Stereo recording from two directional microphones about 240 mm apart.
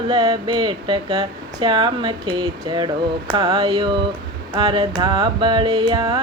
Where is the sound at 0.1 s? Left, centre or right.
Centre.